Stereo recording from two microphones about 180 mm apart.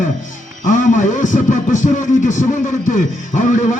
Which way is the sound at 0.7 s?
45° left (ahead or behind).